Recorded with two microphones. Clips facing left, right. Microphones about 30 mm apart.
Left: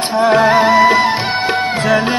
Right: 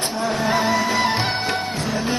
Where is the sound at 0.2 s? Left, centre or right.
Left.